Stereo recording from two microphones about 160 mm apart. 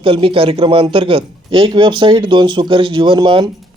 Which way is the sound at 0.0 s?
35° right (ahead or behind).